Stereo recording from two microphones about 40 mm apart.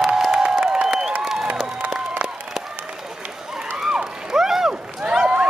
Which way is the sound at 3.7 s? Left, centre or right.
Centre.